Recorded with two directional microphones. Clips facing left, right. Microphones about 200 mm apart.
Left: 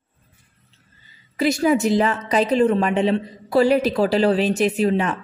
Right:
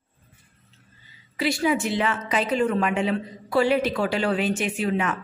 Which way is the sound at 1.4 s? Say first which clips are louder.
Left 5 dB; 45° left (ahead or behind).